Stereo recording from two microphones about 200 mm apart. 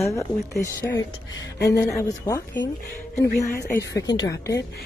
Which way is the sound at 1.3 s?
60° left (ahead or behind).